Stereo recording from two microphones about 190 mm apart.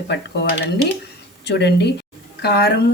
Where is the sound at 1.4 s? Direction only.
60° left (ahead or behind).